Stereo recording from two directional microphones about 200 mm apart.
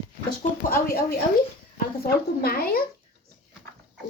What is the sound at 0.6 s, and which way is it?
Speech, 45° left (ahead or behind).